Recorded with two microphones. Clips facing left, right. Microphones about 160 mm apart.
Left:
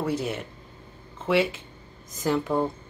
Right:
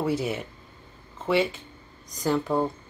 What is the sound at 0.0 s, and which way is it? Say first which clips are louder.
Speech: right 1 dB; centre (ahead or behind).